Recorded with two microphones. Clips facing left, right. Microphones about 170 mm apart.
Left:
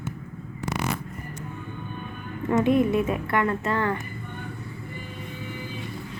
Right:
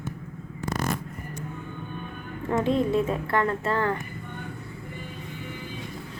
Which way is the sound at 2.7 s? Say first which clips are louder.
Left 2 dB; 25° right (ahead or behind).